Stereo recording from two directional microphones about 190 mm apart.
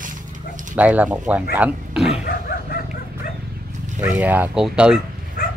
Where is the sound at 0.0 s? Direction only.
45° right (ahead or behind).